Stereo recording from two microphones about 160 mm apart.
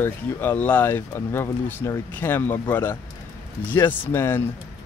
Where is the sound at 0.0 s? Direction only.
10° left (ahead or behind).